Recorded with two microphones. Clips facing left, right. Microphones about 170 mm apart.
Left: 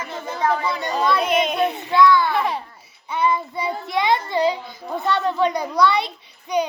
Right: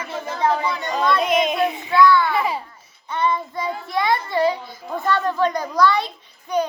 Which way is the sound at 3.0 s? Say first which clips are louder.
Left 1 dB; 10° left (ahead or behind).